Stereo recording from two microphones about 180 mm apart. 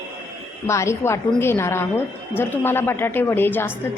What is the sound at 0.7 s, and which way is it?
A woman's voice, 15° left (ahead or behind).